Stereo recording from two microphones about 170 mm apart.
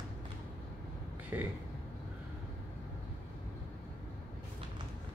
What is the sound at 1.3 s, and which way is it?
Speech, 10° right (ahead or behind).